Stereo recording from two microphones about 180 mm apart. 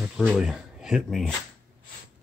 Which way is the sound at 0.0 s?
10° right (ahead or behind).